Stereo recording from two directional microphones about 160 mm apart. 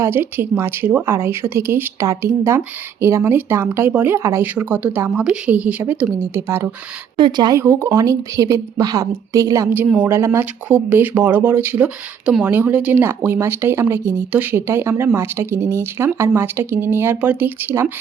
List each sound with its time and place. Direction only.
0.0 s a woman's voice: 15° right (ahead or behind)
7.2 s speech: 25° right (ahead or behind)
7.6 s a woman's voice: 15° right (ahead or behind)